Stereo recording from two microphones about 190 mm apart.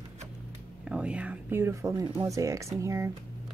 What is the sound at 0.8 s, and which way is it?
A woman's voice, 5° right (ahead or behind).